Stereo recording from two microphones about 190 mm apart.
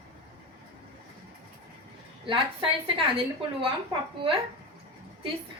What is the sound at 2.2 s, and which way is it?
Speech, 25° right (ahead or behind).